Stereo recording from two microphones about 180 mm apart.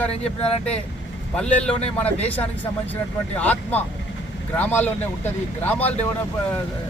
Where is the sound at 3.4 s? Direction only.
10° left (ahead or behind).